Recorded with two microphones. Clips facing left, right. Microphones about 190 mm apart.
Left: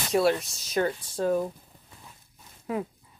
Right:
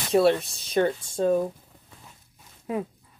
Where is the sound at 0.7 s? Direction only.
25° right (ahead or behind).